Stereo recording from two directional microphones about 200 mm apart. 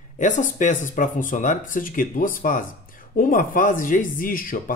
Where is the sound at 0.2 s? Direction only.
40° left (ahead or behind).